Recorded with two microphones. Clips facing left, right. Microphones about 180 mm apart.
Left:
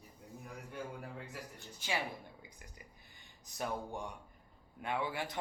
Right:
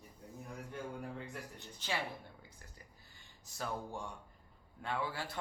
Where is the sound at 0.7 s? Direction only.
Centre (ahead or behind).